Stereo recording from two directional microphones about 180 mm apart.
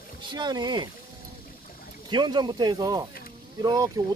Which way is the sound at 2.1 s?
25° right (ahead or behind).